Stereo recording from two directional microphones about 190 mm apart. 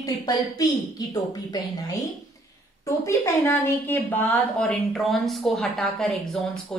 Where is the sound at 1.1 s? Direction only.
20° left (ahead or behind).